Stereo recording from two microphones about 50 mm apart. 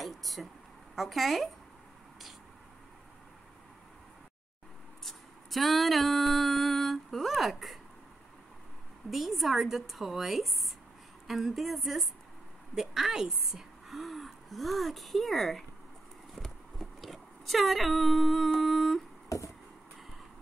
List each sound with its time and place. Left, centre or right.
0.0 s a sound: centre
0.9 s a woman's voice: centre
5.0 s a sound: centre
9.1 s a woman's voice: centre
16.7 s speech: centre
19.2 s chop: left